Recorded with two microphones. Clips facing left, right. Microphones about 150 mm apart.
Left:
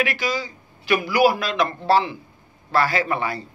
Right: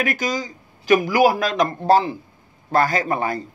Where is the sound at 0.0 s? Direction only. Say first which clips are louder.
Right 1 dB; 45° right (ahead or behind).